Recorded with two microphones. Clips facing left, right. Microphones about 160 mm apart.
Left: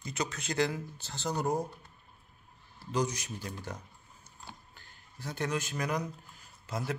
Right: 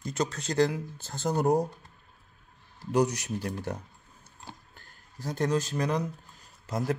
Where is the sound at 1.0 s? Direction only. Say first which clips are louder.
Right 7 dB; 50° right (ahead or behind).